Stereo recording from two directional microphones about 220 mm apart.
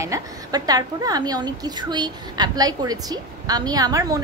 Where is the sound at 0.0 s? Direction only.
15° right (ahead or behind).